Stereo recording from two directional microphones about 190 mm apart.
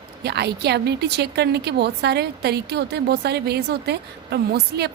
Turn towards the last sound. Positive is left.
turn(degrees=-60)  # may be behind; listen again after turning